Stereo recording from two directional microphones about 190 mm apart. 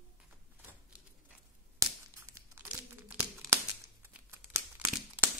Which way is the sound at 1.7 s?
15° right (ahead or behind).